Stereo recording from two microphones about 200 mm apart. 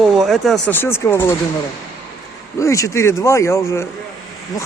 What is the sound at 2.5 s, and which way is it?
Speech, 15° left (ahead or behind).